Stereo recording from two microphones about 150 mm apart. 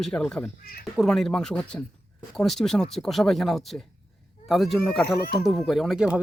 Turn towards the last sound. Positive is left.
turn(degrees=-5)  # may be behind; listen again after turning